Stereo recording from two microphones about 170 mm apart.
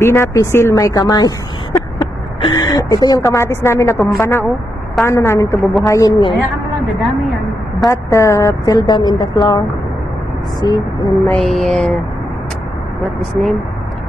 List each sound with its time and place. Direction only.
0.0 s a woman's voice: 15° left (ahead or behind)
7.8 s a woman's voice: 20° left (ahead or behind)
10.6 s a woman's voice: 20° left (ahead or behind)
11.3 s mantra: centre (ahead or behind)
13.0 s mantra: centre (ahead or behind)